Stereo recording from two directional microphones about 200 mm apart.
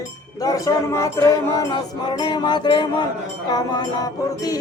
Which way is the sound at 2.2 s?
20° left (ahead or behind).